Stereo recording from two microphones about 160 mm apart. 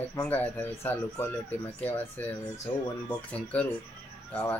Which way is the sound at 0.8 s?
15° left (ahead or behind).